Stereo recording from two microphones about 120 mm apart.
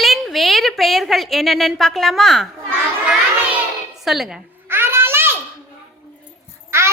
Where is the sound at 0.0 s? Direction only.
Centre (ahead or behind).